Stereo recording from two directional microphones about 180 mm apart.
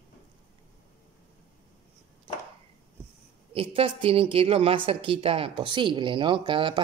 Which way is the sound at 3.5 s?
30° right (ahead or behind).